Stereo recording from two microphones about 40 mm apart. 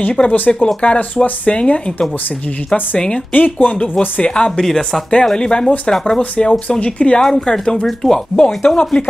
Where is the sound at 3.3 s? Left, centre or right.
Left.